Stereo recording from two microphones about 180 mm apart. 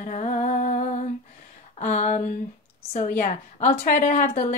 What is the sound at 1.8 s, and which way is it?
Speech, 40° left (ahead or behind).